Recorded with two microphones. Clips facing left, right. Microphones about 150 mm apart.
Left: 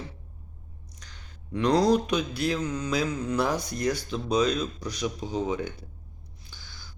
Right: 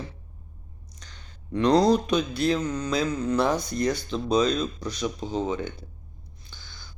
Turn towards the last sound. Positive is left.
turn(degrees=5)  # may be behind; listen again after turning